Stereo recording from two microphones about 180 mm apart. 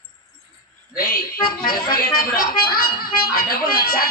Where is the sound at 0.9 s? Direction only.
55° left (ahead or behind).